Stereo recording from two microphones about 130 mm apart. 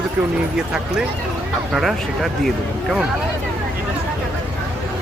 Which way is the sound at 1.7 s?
Centre (ahead or behind).